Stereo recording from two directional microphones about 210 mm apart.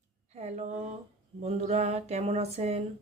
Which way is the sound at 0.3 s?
30° right (ahead or behind).